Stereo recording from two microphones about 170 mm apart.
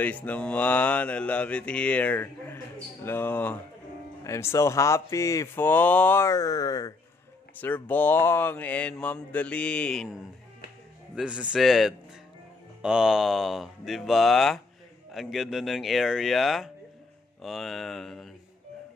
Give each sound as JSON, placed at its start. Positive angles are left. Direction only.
{"t": 0.0, "sound": "mantra", "side_deg": 10}
{"t": 7.5, "sound": "mantra", "side_deg": 10}
{"t": 11.1, "sound": "speech", "side_deg": -5}